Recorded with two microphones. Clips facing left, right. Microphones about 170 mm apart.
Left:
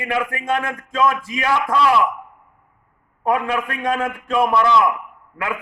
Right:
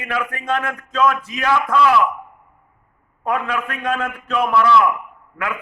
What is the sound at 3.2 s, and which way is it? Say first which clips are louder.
A man's voice: left 2 dB; 20° left (ahead or behind).